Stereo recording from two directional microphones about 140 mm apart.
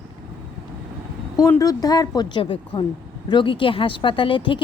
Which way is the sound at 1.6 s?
25° left (ahead or behind).